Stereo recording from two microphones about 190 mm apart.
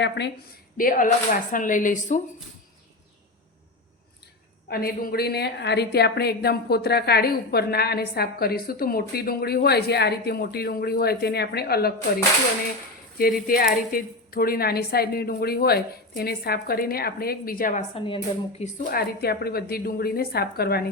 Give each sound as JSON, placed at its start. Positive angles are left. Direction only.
{"t": 0.0, "sound": "a woman's voice", "side_deg": 60}
{"t": 4.7, "sound": "a woman's voice", "side_deg": 55}
{"t": 13.1, "sound": "a woman's voice", "side_deg": 50}
{"t": 17.9, "sound": "speech", "side_deg": 25}
{"t": 18.6, "sound": "a woman's voice", "side_deg": 50}